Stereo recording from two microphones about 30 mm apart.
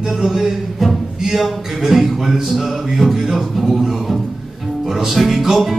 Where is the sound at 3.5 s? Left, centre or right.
Centre.